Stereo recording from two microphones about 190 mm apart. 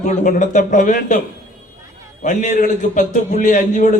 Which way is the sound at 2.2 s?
40° left (ahead or behind).